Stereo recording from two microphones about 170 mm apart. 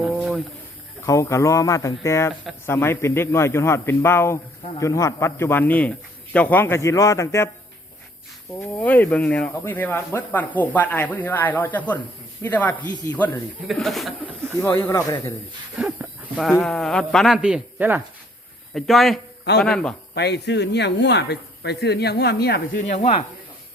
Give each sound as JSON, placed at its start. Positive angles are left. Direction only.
{"t": 0.0, "sound": "a sound", "side_deg": 0}
{"t": 1.0, "sound": "speech", "side_deg": 20}
{"t": 8.8, "sound": "speech", "side_deg": 10}
{"t": 14.6, "sound": "speech", "side_deg": 10}
{"t": 15.8, "sound": "livestock", "side_deg": -5}
{"t": 16.6, "sound": "speech", "side_deg": 0}
{"t": 18.7, "sound": "speech", "side_deg": 0}
{"t": 20.1, "sound": "speech", "side_deg": 75}